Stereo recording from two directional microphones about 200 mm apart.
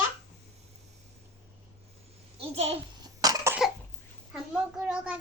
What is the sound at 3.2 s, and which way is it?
Cough, 20° right (ahead or behind).